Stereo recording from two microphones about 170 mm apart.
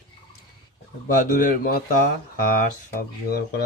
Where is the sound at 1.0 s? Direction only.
60° left (ahead or behind).